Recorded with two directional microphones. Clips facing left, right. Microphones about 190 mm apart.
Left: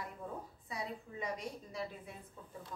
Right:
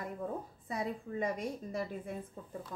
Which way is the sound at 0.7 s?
50° right (ahead or behind).